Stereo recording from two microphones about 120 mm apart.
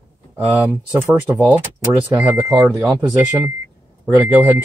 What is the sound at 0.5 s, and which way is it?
Speech, 15° right (ahead or behind).